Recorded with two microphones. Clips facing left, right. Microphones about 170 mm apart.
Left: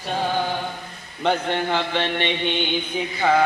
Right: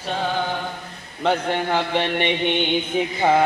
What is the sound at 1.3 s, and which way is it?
A man's voice, 10° right (ahead or behind).